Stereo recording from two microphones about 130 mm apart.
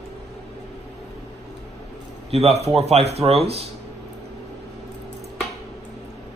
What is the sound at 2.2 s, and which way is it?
A man's voice, 55° right (ahead or behind).